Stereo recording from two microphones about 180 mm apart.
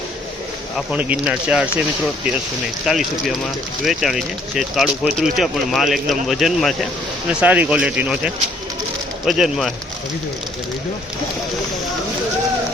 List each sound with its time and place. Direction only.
0.9 s speech: 5° right (ahead or behind)
2.8 s speech: centre (ahead or behind)